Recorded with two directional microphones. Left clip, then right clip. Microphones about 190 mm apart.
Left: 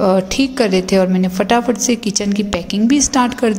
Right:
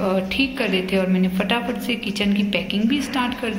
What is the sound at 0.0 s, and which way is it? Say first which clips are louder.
A woman's voice: left 7 dB; 45° left (ahead or behind).